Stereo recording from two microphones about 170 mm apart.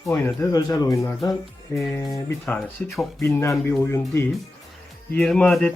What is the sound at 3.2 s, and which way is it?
Speech, 15° left (ahead or behind).